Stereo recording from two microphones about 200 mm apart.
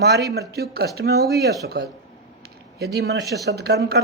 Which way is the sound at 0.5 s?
50° right (ahead or behind).